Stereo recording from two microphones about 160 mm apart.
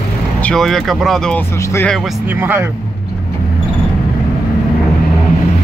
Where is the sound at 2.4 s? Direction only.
15° right (ahead or behind).